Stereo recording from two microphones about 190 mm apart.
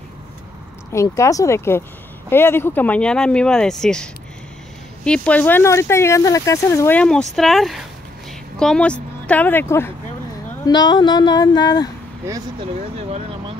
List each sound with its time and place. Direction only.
0.9 s speech: 15° left (ahead or behind)